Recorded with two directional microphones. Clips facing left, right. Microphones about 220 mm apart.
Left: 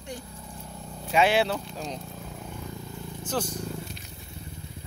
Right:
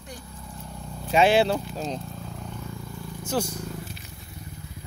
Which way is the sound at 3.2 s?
10° right (ahead or behind).